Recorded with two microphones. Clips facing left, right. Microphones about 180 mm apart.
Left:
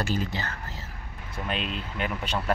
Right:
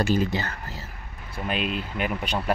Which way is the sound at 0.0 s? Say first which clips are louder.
Right 6 dB; 15° right (ahead or behind).